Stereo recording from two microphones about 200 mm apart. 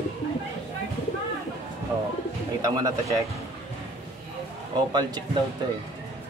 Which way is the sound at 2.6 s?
20° right (ahead or behind).